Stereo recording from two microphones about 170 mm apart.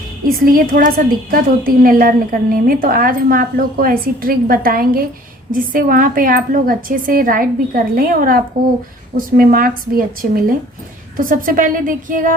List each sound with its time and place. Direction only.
0.3 s a woman's voice: 55° right (ahead or behind)